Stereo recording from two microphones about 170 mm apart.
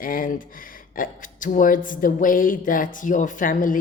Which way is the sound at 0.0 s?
55° left (ahead or behind).